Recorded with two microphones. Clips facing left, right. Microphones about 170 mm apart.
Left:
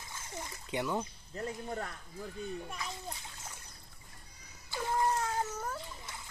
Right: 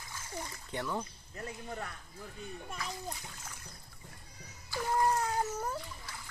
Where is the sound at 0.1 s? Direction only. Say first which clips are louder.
Right 2 dB; 20° left (ahead or behind).